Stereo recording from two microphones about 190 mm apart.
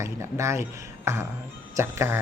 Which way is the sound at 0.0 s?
15° right (ahead or behind).